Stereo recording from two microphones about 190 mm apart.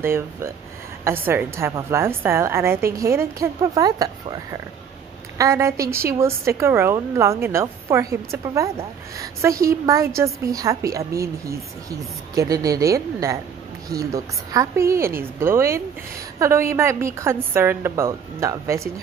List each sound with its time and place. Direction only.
0.0 s a woman's voice: 15° right (ahead or behind)
5.4 s a woman's voice: 15° right (ahead or behind)